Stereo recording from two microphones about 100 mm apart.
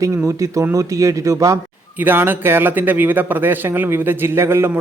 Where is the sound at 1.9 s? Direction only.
20° right (ahead or behind).